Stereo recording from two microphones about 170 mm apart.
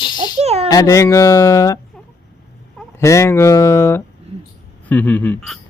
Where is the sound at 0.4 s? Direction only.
35° right (ahead or behind).